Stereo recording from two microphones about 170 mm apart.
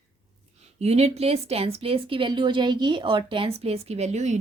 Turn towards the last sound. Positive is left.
turn(degrees=-40)  # may be behind; listen again after turning